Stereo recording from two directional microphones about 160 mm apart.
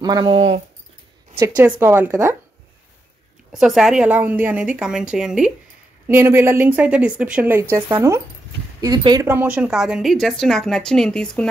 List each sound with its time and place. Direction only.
0.0 s speech: 30° right (ahead or behind)
1.6 s a woman's voice: 15° right (ahead or behind)
3.5 s a woman's voice: centre (ahead or behind)
6.0 s a woman's voice: 15° right (ahead or behind)
9.3 s a woman's voice: 10° right (ahead or behind)